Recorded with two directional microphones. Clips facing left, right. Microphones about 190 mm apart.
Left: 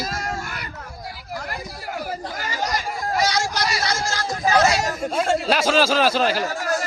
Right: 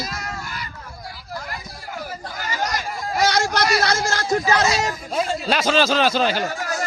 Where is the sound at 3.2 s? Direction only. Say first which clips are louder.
Right 6 dB; 60° right (ahead or behind).